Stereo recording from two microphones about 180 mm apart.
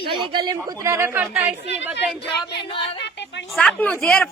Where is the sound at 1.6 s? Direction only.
80° left.